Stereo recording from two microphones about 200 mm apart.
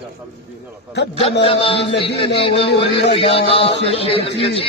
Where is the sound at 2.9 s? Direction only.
30° left (ahead or behind).